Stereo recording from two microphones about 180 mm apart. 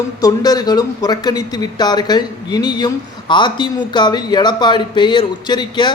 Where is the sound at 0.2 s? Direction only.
20° left (ahead or behind).